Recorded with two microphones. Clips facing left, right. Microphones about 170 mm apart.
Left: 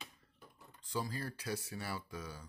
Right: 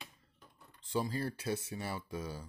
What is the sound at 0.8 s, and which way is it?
Speech, 25° right (ahead or behind).